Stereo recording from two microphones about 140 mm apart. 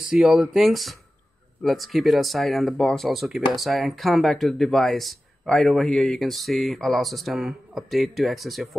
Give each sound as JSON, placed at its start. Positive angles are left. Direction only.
{"t": 0.1, "sound": "speech", "side_deg": -5}